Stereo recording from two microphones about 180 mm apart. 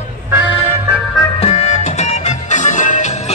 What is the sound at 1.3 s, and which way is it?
Music, 35° left (ahead or behind).